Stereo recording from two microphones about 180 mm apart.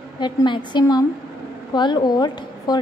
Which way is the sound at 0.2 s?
25° left (ahead or behind).